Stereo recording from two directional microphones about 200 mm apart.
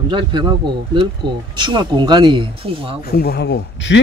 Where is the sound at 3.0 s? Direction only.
50° left (ahead or behind).